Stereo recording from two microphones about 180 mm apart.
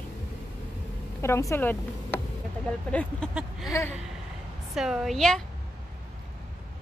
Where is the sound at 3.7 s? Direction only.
15° left (ahead or behind).